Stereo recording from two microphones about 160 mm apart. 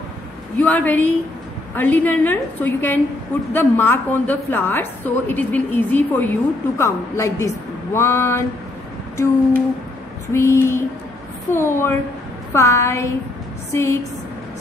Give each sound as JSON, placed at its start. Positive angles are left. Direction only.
{"t": 0.6, "sound": "a woman's voice", "side_deg": 10}
{"t": 9.1, "sound": "humming", "side_deg": 15}
{"t": 10.3, "sound": "a woman's voice", "side_deg": 15}